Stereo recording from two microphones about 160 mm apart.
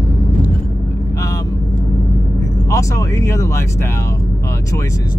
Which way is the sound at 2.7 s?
20° left (ahead or behind).